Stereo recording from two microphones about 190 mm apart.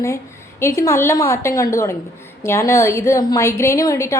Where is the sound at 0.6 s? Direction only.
15° left (ahead or behind).